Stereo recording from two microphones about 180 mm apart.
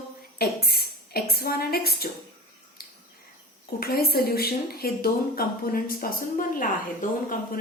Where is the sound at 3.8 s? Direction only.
60° left (ahead or behind).